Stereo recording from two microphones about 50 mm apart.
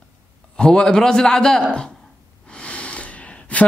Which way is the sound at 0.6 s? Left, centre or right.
Centre.